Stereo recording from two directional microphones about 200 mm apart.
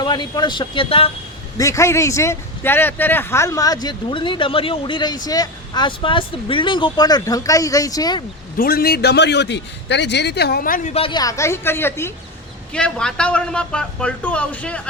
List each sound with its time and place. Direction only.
0.0 s speech: 20° left (ahead or behind)
1.5 s speech: 15° left (ahead or behind)
8.5 s a man's voice: 50° left (ahead or behind); by 14.8 s 5° left (ahead or behind)